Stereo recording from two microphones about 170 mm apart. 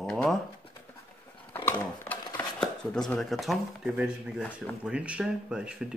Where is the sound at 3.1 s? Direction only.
Centre (ahead or behind).